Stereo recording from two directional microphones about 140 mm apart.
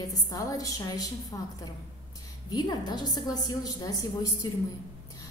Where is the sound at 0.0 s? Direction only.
25° left (ahead or behind).